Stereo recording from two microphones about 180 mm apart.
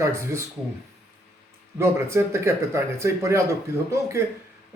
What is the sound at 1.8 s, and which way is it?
Speech, 15° right (ahead or behind).